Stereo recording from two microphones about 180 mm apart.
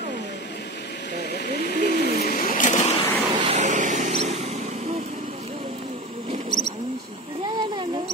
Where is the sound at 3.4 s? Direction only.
40° right (ahead or behind).